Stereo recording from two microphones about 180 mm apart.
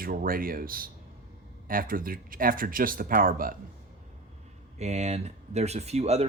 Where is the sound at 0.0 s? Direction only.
50° right (ahead or behind).